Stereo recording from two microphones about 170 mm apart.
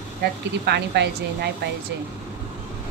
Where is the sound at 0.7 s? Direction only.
80° right.